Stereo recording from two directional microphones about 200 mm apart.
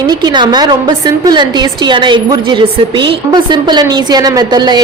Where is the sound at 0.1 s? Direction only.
20° right (ahead or behind).